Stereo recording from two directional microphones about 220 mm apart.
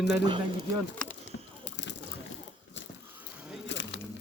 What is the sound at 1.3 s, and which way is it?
Vehicle, 55° left (ahead or behind).